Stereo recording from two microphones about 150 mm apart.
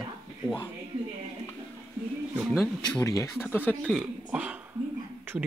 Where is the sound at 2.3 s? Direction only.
Centre (ahead or behind).